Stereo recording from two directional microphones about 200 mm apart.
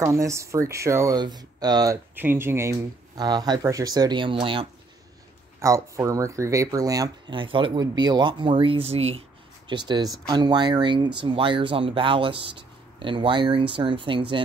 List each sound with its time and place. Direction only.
0.0 s speech: 15° right (ahead or behind)
5.6 s speech: 15° right (ahead or behind)